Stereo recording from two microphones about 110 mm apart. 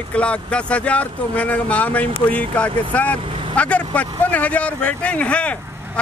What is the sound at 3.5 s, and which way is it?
Speech, 10° left (ahead or behind).